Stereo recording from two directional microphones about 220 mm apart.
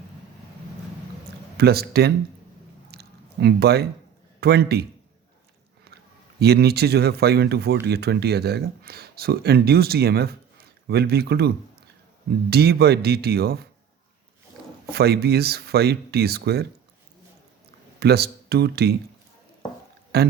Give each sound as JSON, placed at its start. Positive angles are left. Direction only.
{"t": 1.5, "sound": "speech", "side_deg": -45}
{"t": 2.9, "sound": "a sound", "side_deg": -50}
{"t": 4.4, "sound": "a man's voice", "side_deg": -45}
{"t": 6.4, "sound": "speech", "side_deg": -45}
{"t": 14.8, "sound": "speech", "side_deg": -45}
{"t": 18.0, "sound": "speech", "side_deg": -45}
{"t": 20.1, "sound": "speech", "side_deg": -45}